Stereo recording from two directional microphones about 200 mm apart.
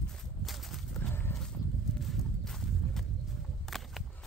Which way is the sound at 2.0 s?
Centre (ahead or behind).